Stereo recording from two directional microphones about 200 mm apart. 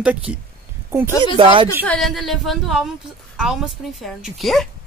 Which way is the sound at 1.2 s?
25° right (ahead or behind).